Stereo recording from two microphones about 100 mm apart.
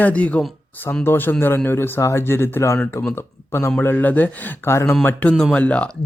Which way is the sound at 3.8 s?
20° left (ahead or behind).